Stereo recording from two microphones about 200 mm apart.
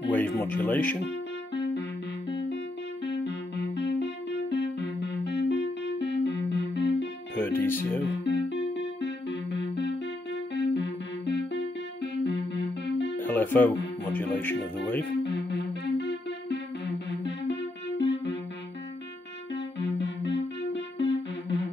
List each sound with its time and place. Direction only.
0.1 s speech: 10° left (ahead or behind)
1.0 s music: 60° left (ahead or behind)
3.1 s music: 55° left (ahead or behind)
7.3 s music: 10° left (ahead or behind)
8.0 s music: 60° left (ahead or behind)
13.2 s speech: 10° left (ahead or behind)
15.2 s music: 60° left (ahead or behind)
19.5 s music: 60° left (ahead or behind)